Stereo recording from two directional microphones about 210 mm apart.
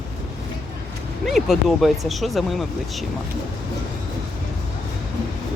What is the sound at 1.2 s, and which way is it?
Speech, centre (ahead or behind).